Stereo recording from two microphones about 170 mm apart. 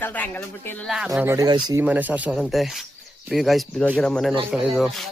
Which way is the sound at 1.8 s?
10° right (ahead or behind).